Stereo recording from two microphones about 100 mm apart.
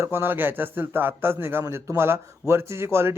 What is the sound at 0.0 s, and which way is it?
A man's voice, 20° right (ahead or behind).